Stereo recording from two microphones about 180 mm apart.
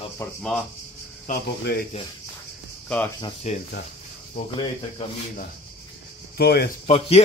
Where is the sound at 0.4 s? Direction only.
Centre (ahead or behind).